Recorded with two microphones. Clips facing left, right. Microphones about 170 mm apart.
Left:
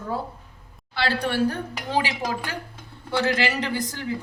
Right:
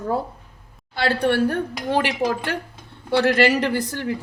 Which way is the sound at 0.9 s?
50° right (ahead or behind).